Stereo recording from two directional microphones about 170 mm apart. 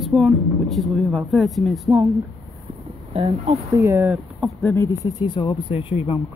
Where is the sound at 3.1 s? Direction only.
35° right (ahead or behind).